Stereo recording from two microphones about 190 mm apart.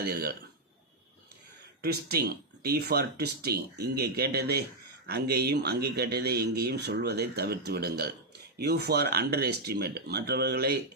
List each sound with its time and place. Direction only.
0.0 s a man's voice: 55° right (ahead or behind)
1.8 s a man's voice: 55° right (ahead or behind)